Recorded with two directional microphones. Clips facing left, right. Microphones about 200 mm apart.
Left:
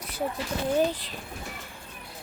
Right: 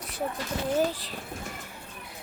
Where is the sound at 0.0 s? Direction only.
Centre (ahead or behind).